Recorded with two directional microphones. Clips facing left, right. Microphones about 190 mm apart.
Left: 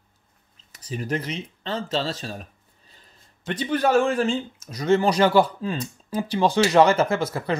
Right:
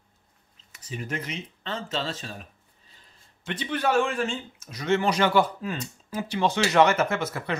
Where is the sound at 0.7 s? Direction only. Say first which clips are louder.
Left 6 dB; 40° left (ahead or behind).